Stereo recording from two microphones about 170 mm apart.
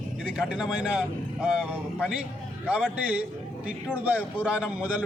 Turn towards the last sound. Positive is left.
turn(degrees=-5)  # may be behind; listen again after turning